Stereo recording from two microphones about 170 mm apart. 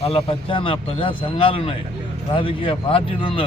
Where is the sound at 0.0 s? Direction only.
35° left (ahead or behind).